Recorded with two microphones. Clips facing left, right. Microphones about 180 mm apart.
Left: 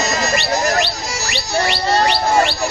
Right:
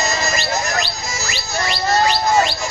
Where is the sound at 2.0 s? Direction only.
65° left (ahead or behind).